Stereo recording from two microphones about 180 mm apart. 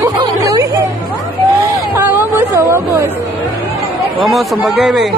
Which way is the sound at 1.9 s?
10° right (ahead or behind).